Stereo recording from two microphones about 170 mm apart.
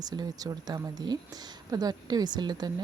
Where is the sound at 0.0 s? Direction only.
25° right (ahead or behind).